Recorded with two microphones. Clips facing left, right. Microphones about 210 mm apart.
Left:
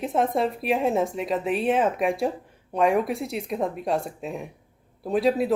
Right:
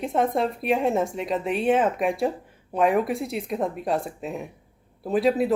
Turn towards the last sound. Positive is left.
turn(degrees=0)  # may be behind; listen again after turning